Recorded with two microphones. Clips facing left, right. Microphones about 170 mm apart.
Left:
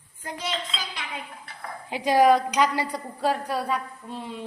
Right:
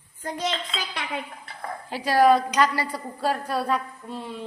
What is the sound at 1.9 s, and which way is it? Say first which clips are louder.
A woman's voice: even; 15° left (ahead or behind).